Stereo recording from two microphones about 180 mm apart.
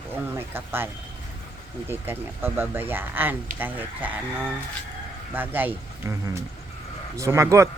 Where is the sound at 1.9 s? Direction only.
10° right (ahead or behind).